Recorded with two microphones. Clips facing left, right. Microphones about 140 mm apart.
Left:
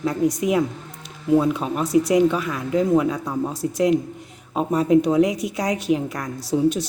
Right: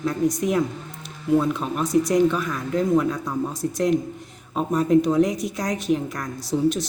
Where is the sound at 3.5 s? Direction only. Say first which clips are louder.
Left 1 dB; 30° left (ahead or behind).